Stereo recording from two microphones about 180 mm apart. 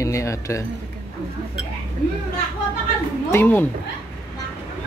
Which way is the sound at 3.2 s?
10° left (ahead or behind).